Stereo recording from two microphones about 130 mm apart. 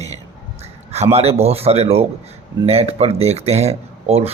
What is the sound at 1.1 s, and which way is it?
Speech, 50° right (ahead or behind).